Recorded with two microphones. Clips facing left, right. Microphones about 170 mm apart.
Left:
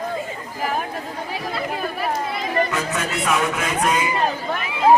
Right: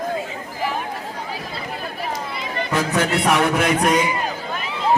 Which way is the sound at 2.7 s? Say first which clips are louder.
Right 5 dB; 80° right.